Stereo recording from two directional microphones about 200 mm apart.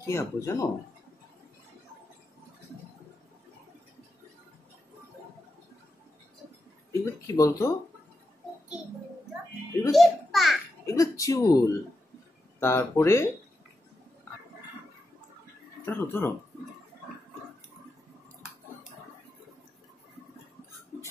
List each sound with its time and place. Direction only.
0.0 s speech: 15° left (ahead or behind)
6.9 s speech: 15° left (ahead or behind)
9.8 s a child's voice: centre (ahead or behind)
10.9 s speech: 15° left (ahead or behind)
15.8 s speech: 10° left (ahead or behind)